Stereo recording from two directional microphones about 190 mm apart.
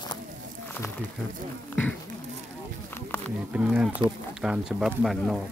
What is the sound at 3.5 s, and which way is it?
Speech, 5° right (ahead or behind).